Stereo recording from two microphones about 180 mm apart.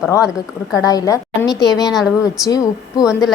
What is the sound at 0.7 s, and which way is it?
A woman's voice, 20° left (ahead or behind).